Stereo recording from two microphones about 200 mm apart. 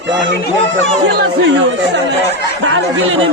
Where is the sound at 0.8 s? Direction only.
65° right (ahead or behind).